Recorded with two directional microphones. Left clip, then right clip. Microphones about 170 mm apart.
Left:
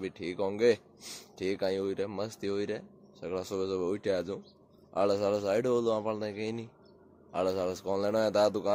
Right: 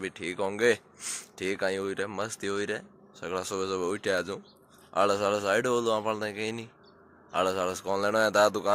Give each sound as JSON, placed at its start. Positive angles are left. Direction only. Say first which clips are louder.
{"t": 0.0, "sound": "speech", "louder": "right 2 dB", "side_deg": 10}